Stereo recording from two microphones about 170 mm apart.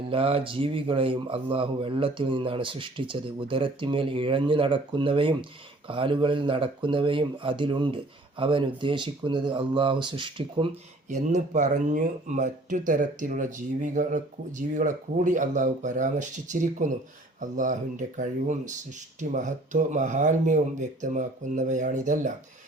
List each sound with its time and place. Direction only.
0.1 s speech: 35° right (ahead or behind)
11.1 s speech: 45° right (ahead or behind)